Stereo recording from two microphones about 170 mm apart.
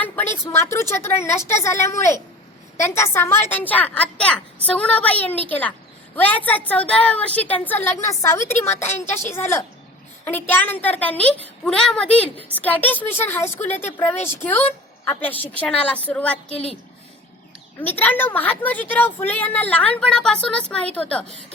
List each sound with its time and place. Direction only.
0.0 s a woman's voice: 10° left (ahead or behind)
17.8 s a woman's voice: 10° left (ahead or behind)